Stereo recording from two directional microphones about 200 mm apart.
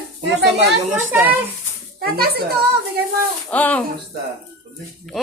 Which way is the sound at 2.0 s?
50° right (ahead or behind).